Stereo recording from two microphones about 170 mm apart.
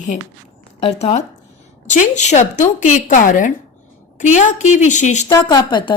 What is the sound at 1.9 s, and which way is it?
A woman's voice, 45° left (ahead or behind).